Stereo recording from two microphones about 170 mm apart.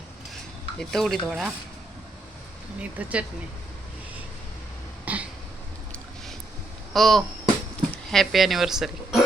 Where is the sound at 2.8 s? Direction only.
10° right (ahead or behind).